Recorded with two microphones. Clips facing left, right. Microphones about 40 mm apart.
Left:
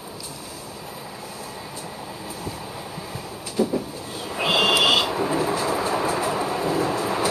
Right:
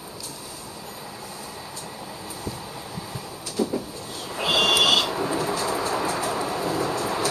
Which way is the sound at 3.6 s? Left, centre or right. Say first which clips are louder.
Left 3 dB; centre.